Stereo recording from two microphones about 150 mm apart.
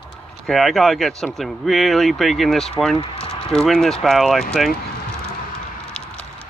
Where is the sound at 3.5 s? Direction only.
5° left (ahead or behind).